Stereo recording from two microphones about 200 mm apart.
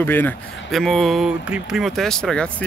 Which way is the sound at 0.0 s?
10° left (ahead or behind).